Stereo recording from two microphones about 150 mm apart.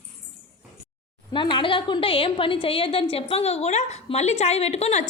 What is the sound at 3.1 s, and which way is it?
A woman's voice, 40° left (ahead or behind).